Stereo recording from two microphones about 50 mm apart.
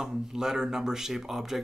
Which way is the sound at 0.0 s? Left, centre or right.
Centre.